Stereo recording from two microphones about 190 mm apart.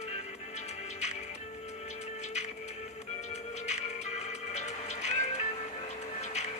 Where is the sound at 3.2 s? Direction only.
35° left (ahead or behind).